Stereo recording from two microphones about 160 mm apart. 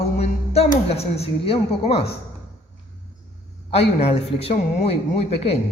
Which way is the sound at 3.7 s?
40° left (ahead or behind).